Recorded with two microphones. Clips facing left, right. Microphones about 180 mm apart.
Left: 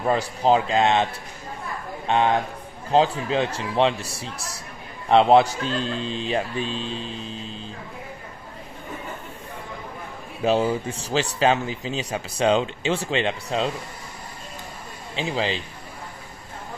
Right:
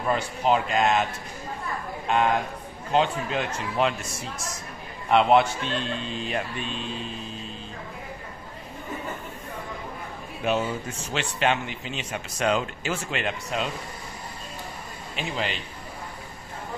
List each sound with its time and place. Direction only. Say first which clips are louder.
0.1 s a man's voice: left 3 dB; 35° left (ahead or behind)
2.0 s a man's voice: left 2 dB; 30° left (ahead or behind)
10.4 s a man's voice: left 5 dB; 30° left (ahead or behind)
15.1 s a man's voice: left 5 dB; 30° left (ahead or behind)